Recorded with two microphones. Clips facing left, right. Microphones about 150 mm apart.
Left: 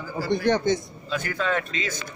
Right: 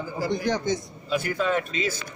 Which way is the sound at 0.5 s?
60° left (ahead or behind).